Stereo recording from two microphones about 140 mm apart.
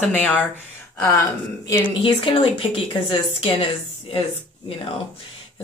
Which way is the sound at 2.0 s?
40° left (ahead or behind).